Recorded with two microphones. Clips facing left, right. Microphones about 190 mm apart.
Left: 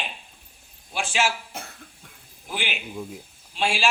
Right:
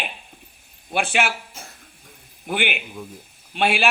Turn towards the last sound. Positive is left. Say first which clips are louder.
# right 4 dB
turn(degrees=-60)  # may be behind; listen again after turning